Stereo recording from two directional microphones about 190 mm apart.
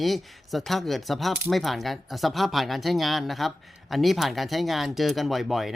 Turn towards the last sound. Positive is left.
turn(degrees=0)  # may be behind; listen again after turning